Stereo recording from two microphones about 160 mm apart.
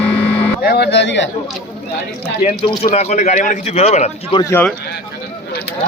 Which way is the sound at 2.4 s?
45° left (ahead or behind).